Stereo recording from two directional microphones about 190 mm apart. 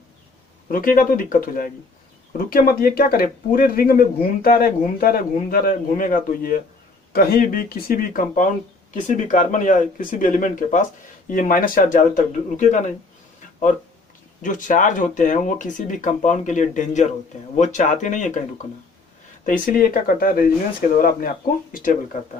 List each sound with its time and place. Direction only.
0.7 s a man's voice: 45° left (ahead or behind)
14.4 s a man's voice: 40° left (ahead or behind)